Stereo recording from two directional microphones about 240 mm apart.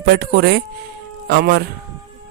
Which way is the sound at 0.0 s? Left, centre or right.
Right.